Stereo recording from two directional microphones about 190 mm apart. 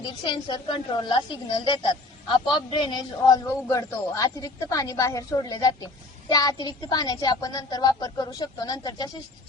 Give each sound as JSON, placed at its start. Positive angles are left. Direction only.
{"t": 0.0, "sound": "speech", "side_deg": 25}